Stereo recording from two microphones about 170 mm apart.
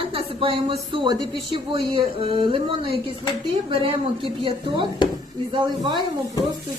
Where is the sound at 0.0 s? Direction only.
30° right (ahead or behind).